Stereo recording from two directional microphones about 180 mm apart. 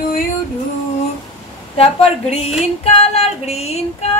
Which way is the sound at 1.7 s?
35° left (ahead or behind).